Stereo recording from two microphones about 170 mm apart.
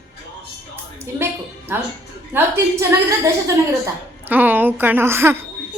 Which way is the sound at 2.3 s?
15° right (ahead or behind).